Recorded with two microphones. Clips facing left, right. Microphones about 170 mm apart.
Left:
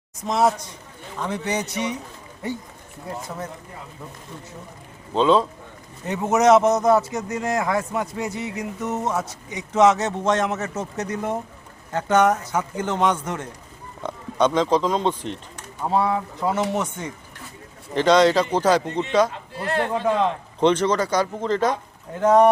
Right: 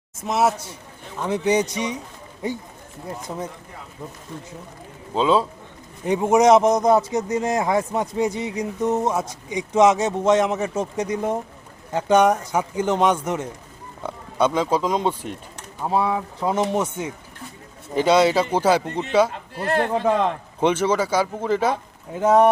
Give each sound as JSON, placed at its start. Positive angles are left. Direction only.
{"t": 0.3, "sound": "a man's voice", "side_deg": -5}
{"t": 3.2, "sound": "a man's voice", "side_deg": -15}
{"t": 5.1, "sound": "a man's voice", "side_deg": -5}
{"t": 8.8, "sound": "a man's voice", "side_deg": -30}
{"t": 9.0, "sound": "a man's voice", "side_deg": -10}
{"t": 19.6, "sound": "speech", "side_deg": -45}
{"t": 20.6, "sound": "a man's voice", "side_deg": -10}